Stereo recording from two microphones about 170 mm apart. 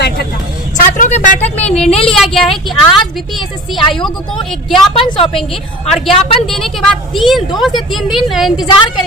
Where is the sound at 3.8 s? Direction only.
30° left (ahead or behind).